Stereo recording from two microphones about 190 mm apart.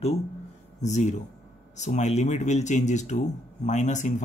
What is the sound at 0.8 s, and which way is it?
Speech, 40° left (ahead or behind).